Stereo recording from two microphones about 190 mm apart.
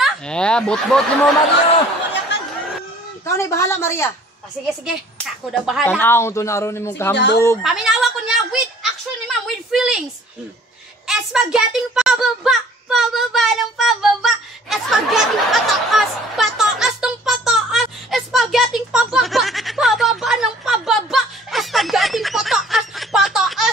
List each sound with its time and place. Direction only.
0.0 s speech: 5° left (ahead or behind)
3.3 s speech: 15° left (ahead or behind)
4.6 s speech: centre (ahead or behind)
5.9 s speech: 10° left (ahead or behind)
7.2 s speech: 60° left (ahead or behind)
7.6 s a woman's voice: centre (ahead or behind)
11.1 s a sound: 5° right (ahead or behind)